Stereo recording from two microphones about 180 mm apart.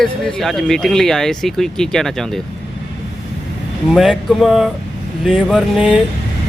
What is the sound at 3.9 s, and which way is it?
A man's voice, centre (ahead or behind).